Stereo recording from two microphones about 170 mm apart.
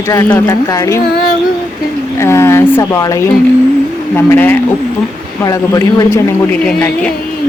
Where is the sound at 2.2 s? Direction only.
15° left (ahead or behind).